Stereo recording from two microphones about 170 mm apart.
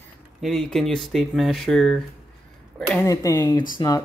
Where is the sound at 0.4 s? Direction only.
Centre (ahead or behind).